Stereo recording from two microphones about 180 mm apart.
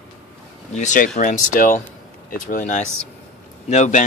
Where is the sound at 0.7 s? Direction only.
45° left (ahead or behind).